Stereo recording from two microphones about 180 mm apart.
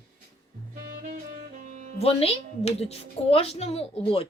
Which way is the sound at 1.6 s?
40° right (ahead or behind).